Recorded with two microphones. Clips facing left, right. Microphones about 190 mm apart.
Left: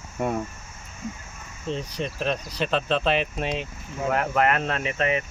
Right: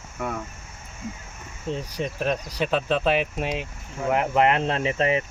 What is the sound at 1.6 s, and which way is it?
Speech, 10° right (ahead or behind).